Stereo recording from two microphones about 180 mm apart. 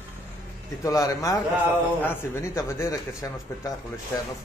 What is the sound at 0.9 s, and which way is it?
A man's voice, 20° left (ahead or behind).